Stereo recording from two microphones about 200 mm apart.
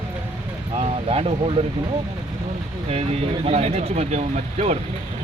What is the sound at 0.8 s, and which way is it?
Speech, 30° right (ahead or behind).